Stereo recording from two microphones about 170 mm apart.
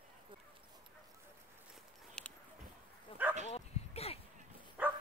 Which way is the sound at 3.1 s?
30° left (ahead or behind).